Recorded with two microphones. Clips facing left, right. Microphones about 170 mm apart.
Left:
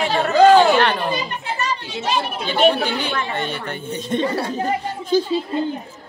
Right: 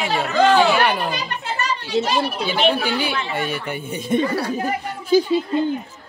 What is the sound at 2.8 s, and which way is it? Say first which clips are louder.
Speech: even; 10° right (ahead or behind).